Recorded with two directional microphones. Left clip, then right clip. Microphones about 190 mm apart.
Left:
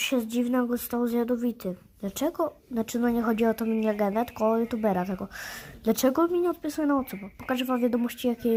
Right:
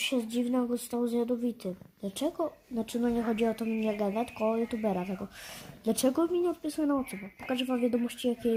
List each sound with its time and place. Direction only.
0.0 s speech: 15° left (ahead or behind)